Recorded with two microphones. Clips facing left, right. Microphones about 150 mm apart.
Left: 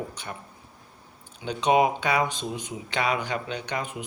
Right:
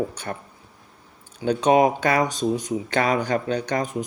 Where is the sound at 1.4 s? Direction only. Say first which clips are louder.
Right 4 dB; 45° right (ahead or behind).